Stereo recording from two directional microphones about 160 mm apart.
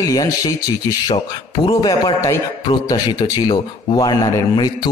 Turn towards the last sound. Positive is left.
turn(degrees=25)  # may be behind; listen again after turning